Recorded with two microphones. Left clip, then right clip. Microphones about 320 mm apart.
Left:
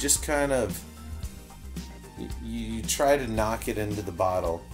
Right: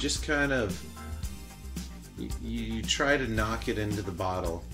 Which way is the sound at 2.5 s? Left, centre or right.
Centre.